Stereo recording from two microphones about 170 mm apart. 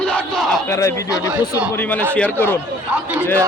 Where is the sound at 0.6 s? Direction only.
20° left (ahead or behind).